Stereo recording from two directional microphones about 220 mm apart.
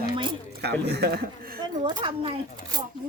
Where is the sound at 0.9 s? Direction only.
45° right (ahead or behind).